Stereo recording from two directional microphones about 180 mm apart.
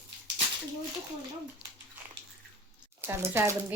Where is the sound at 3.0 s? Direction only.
15° right (ahead or behind).